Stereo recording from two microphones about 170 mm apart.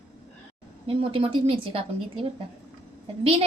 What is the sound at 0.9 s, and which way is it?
Speech, 30° right (ahead or behind).